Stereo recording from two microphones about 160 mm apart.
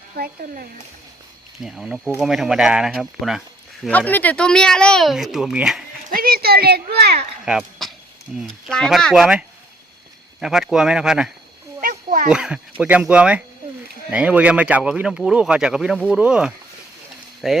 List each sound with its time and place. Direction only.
0.2 s speech: 65° right (ahead or behind)
1.6 s speech: centre (ahead or behind)
3.8 s speech: 10° left (ahead or behind)
6.1 s speech: 65° right (ahead or behind); by 7.3 s 85° right
7.4 s a sound: centre (ahead or behind)
8.4 s speech: centre (ahead or behind)
10.4 s speech: 5° right (ahead or behind)
11.8 s a sound: 55° right (ahead or behind)
12.3 s speech: 5° right (ahead or behind)